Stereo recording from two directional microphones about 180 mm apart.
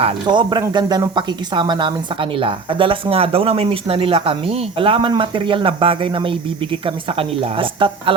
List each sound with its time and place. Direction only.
0.0 s speech: 25° right (ahead or behind)